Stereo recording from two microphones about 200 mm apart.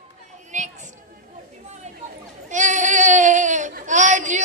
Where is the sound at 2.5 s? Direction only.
40° right (ahead or behind).